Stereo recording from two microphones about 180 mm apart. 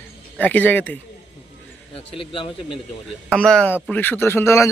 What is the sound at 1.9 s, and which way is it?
Speech, 30° left (ahead or behind).